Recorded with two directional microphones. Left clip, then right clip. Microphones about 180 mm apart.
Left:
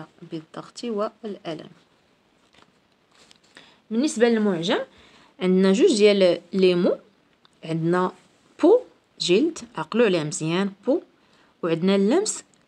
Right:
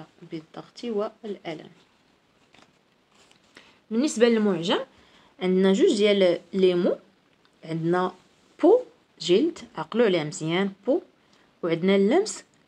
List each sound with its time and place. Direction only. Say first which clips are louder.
0.0 s speech: left 2 dB; 50° left (ahead or behind)
3.5 s speech: left 1 dB; 15° left (ahead or behind)
5.4 s speech: left 2 dB; 45° left (ahead or behind)
7.6 s a sound: left 2 dB; 45° left (ahead or behind)
9.4 s speech: left 2 dB; 40° left (ahead or behind)